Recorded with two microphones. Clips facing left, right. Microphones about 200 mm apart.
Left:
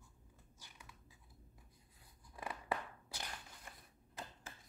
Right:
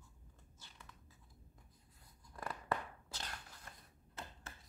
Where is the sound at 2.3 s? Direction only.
5° left (ahead or behind).